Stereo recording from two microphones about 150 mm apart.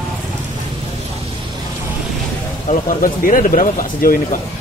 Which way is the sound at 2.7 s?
65° left (ahead or behind).